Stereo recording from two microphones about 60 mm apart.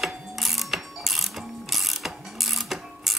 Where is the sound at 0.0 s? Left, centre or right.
Centre.